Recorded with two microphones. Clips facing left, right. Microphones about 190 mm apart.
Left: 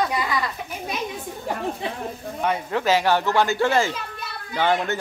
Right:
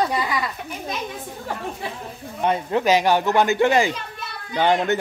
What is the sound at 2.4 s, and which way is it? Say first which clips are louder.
Speech: right 3 dB; 20° right (ahead or behind).